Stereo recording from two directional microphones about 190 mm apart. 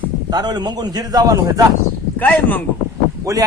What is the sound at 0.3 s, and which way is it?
A man's voice, 20° right (ahead or behind).